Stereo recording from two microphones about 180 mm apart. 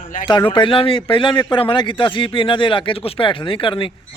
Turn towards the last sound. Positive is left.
turn(degrees=30)  # may be behind; listen again after turning